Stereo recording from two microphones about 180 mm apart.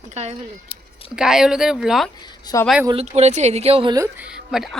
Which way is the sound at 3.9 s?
15° right (ahead or behind).